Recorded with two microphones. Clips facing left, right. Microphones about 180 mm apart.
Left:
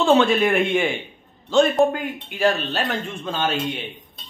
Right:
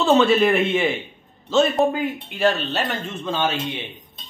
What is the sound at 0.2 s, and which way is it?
Speech, centre (ahead or behind).